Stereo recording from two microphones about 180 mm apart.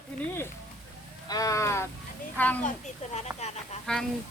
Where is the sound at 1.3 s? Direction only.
20° left (ahead or behind).